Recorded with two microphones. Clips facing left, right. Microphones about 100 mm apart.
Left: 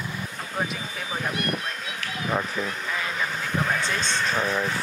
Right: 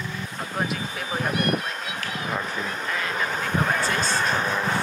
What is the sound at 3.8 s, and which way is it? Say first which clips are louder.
Speech: right 3 dB; 40° right (ahead or behind).